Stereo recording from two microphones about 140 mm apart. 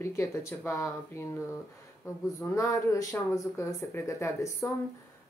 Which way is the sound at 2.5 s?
25° left (ahead or behind).